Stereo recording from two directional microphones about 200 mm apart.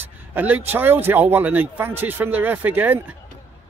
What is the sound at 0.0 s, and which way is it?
Speech, 10° right (ahead or behind).